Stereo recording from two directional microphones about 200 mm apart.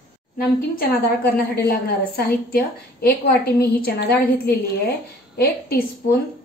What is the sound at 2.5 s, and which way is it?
A woman's voice, 50° left (ahead or behind).